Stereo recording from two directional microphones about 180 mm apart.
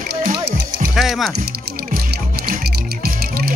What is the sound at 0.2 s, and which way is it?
Music, 50° right (ahead or behind).